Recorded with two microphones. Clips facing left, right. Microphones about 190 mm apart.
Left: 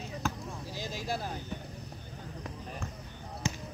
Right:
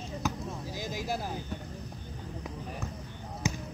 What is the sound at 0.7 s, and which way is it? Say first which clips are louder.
Speech: right 1 dB; 15° right (ahead or behind).